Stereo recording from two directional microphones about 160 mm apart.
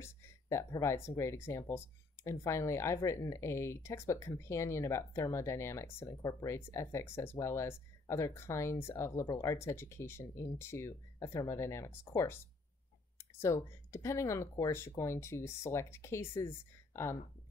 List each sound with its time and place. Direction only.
0.0 s speech: 20° left (ahead or behind)
13.4 s speech: 15° left (ahead or behind)